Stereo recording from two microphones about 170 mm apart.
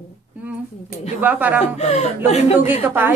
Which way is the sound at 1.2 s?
10° right (ahead or behind).